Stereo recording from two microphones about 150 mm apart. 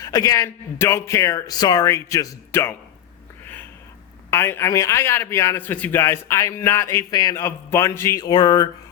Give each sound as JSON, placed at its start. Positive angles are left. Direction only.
{"t": 0.0, "sound": "a man's voice", "side_deg": 25}
{"t": 4.3, "sound": "a man's voice", "side_deg": 15}